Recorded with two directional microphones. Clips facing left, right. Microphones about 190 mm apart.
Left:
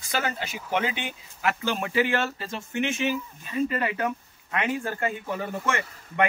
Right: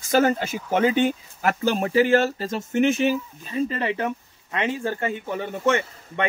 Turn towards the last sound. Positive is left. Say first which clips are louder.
# right 3 dB
turn(degrees=-25)  # may be behind; listen again after turning